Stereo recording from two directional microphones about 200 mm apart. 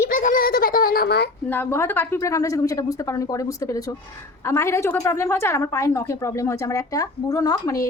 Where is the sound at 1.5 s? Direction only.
10° left (ahead or behind).